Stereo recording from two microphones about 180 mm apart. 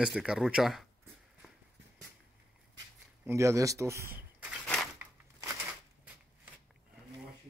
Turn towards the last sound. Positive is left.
turn(degrees=-10)  # may be behind; listen again after turning